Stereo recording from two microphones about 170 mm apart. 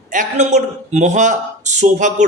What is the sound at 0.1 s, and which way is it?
A man's voice, 45° right (ahead or behind).